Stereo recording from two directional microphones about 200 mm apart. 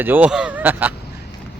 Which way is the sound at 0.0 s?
10° right (ahead or behind).